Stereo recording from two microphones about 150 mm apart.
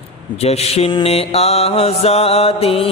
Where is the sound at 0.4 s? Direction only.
45° left (ahead or behind).